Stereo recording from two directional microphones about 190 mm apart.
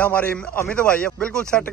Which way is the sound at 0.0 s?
5° left (ahead or behind).